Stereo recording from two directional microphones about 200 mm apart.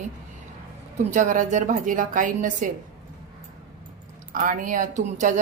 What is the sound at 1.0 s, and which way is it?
Speech, 40° right (ahead or behind).